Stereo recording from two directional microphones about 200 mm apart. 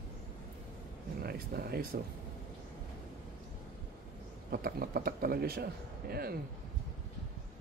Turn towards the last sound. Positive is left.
turn(degrees=-50)  # may be behind; listen again after turning